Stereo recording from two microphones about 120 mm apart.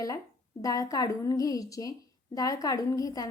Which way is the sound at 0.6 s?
30° left (ahead or behind).